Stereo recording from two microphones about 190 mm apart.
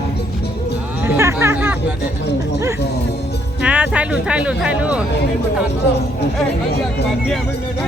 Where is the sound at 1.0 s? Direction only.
15° right (ahead or behind).